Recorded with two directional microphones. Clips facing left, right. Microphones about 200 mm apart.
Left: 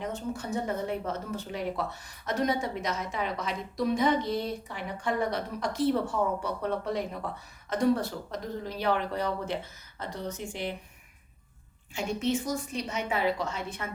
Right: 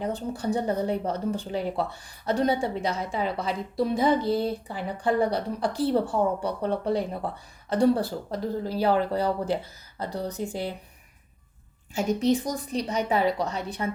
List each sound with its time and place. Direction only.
0.0 s speech: 35° right (ahead or behind)
11.9 s speech: 40° right (ahead or behind)